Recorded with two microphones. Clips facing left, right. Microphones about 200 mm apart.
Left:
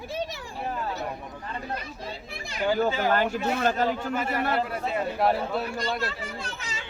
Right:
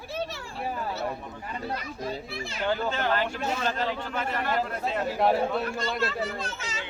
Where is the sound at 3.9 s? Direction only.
10° left (ahead or behind).